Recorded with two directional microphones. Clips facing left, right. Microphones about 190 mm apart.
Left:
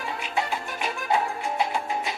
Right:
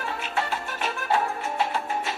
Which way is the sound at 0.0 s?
15° left (ahead or behind).